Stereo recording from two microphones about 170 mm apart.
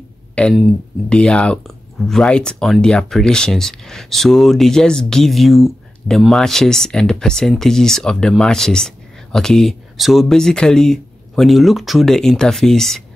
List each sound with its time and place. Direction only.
0.4 s speech: 5° left (ahead or behind)